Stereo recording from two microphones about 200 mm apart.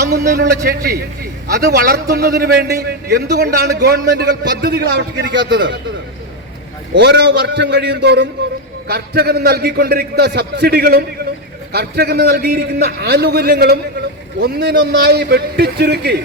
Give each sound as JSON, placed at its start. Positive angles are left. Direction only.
{"t": 0.1, "sound": "a man's voice", "side_deg": -50}
{"t": 6.9, "sound": "a man's voice", "side_deg": -60}